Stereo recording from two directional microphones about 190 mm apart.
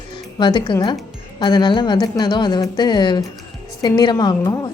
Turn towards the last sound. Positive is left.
turn(degrees=20)  # may be behind; listen again after turning